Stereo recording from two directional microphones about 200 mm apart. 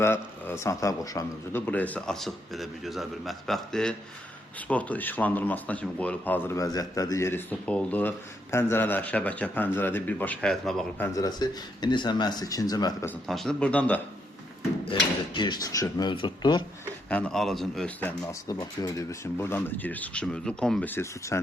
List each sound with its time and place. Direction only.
0.0 s speech: 10° left (ahead or behind)
13.2 s speech: centre (ahead or behind)
14.8 s speech: 25° left (ahead or behind)
17.1 s speech: 5° left (ahead or behind)